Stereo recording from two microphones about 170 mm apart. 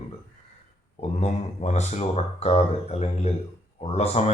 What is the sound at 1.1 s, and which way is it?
Speech, 40° left (ahead or behind).